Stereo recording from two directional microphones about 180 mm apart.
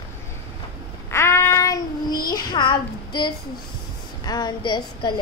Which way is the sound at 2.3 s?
25° left (ahead or behind).